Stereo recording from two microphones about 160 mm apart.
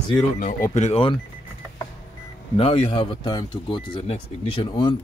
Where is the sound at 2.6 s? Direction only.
40° left (ahead or behind).